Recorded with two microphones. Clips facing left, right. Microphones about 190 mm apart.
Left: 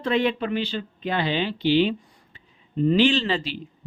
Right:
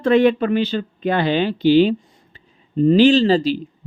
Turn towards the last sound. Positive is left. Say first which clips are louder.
# right 9 dB
turn(degrees=-40)  # may be behind; listen again after turning